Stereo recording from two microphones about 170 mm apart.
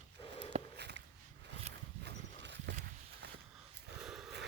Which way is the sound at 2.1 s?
90° right.